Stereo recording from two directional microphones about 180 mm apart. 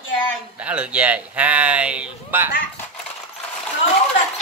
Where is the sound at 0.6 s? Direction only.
5° right (ahead or behind).